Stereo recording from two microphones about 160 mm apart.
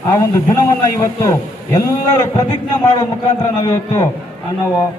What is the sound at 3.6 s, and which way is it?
Speech, 20° left (ahead or behind).